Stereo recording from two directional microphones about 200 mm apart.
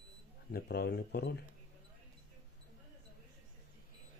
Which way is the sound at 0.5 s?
55° left (ahead or behind).